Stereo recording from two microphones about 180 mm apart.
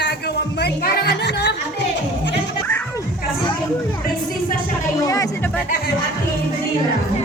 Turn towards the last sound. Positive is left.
turn(degrees=20)  # may be behind; listen again after turning